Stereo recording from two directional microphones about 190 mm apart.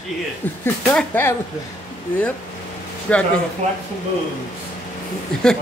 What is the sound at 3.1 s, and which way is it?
Speech, 5° left (ahead or behind).